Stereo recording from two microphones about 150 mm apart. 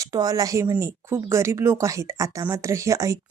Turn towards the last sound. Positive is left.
turn(degrees=-20)  # may be behind; listen again after turning